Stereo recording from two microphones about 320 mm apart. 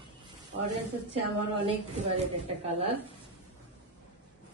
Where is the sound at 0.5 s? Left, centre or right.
Right.